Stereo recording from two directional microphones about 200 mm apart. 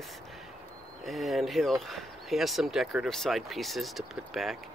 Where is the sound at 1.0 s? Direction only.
Centre (ahead or behind).